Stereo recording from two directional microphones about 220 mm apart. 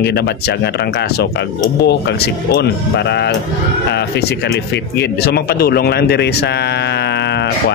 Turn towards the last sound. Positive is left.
turn(degrees=50)  # may be behind; listen again after turning